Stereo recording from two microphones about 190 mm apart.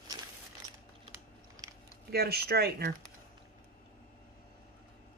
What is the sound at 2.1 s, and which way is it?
Speech, 55° right (ahead or behind).